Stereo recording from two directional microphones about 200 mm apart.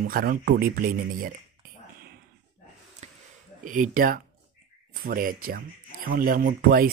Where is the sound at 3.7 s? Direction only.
45° right (ahead or behind).